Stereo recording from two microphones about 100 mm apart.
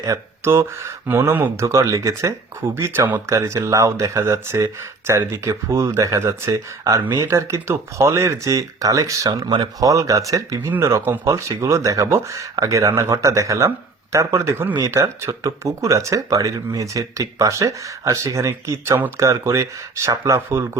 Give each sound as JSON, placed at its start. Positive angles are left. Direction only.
{"t": 0.0, "sound": "speech", "side_deg": -30}